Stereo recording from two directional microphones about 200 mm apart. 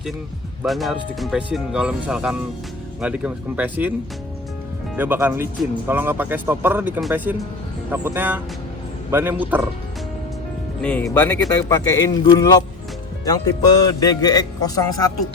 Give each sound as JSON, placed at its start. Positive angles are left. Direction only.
{"t": 0.6, "sound": "speech", "side_deg": 0}
{"t": 4.9, "sound": "speech", "side_deg": -10}
{"t": 10.8, "sound": "a man's voice", "side_deg": 5}